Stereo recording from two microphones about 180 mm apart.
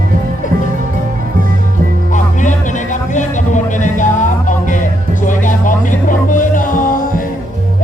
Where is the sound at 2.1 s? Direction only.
45° left (ahead or behind).